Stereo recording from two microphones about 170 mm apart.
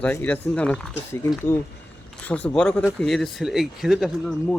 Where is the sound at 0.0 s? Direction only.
10° left (ahead or behind).